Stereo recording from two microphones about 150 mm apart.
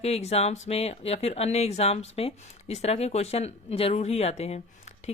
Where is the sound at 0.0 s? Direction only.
45° left (ahead or behind).